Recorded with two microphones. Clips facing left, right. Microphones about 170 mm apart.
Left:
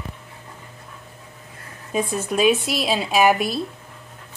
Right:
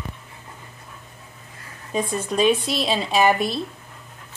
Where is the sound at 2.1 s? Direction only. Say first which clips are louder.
Left 1 dB; 5° left (ahead or behind).